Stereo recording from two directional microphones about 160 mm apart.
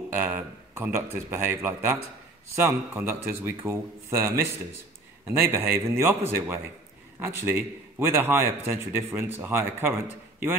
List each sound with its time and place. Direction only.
0.1 s a man's voice: 15° right (ahead or behind)